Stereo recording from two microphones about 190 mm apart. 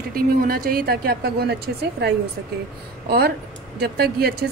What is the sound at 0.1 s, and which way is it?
A woman's voice, 50° right (ahead or behind).